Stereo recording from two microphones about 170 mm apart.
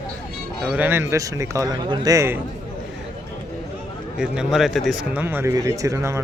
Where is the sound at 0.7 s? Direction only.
10° right (ahead or behind).